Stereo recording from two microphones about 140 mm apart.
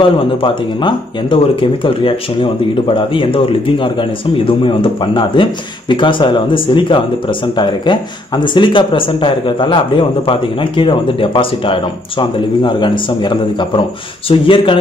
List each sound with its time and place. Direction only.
0.0 s speech: 35° left (ahead or behind)